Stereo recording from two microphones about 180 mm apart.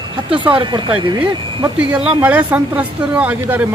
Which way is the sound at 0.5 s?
25° right (ahead or behind).